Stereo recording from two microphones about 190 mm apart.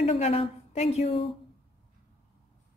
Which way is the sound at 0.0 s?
30° left (ahead or behind).